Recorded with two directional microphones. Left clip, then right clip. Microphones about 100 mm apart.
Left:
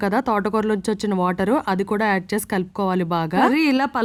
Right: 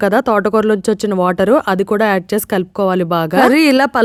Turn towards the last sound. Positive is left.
turn(degrees=-45)  # may be behind; listen again after turning